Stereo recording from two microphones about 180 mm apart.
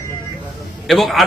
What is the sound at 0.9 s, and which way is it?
Speech, centre (ahead or behind).